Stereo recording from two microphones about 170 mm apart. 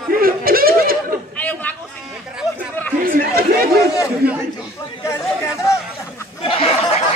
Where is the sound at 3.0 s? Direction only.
60° right (ahead or behind).